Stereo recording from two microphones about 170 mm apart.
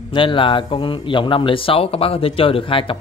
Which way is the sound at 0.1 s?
30° left (ahead or behind).